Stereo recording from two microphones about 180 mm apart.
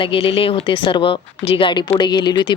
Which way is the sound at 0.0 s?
30° left (ahead or behind).